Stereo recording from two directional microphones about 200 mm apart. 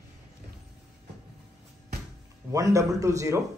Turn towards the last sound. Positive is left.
turn(degrees=-15)  # may be behind; listen again after turning